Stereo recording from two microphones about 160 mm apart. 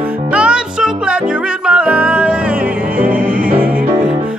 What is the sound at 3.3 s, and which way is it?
Music, 60° right (ahead or behind).